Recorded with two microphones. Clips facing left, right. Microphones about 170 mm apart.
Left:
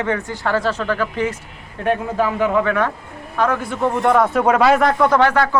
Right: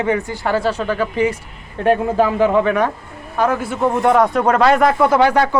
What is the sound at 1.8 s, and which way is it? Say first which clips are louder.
Speech: right 4 dB; 30° right (ahead or behind).